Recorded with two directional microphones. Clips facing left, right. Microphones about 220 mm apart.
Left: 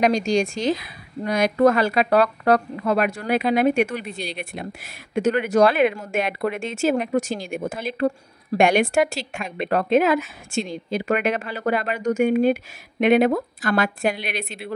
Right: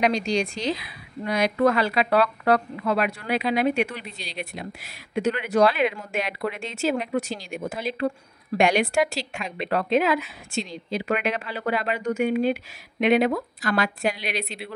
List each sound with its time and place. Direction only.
0.0 s a woman's voice: 45° left (ahead or behind)